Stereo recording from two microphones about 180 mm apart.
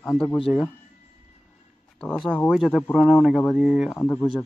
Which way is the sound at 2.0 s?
5° left (ahead or behind).